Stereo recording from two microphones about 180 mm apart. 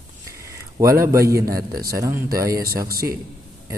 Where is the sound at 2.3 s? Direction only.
20° right (ahead or behind).